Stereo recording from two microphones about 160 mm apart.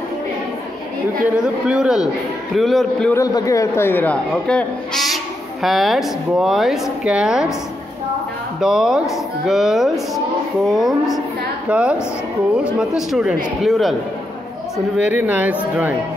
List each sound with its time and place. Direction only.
1.2 s speech: 5° right (ahead or behind)
3.1 s speech: 20° left (ahead or behind); by 7.5 s 5° right (ahead or behind)
8.5 s speech: 5° right (ahead or behind)
15.0 s speech: 10° right (ahead or behind)